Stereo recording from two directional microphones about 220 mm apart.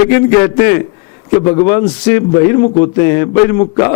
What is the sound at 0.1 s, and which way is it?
A man's voice, 15° left (ahead or behind).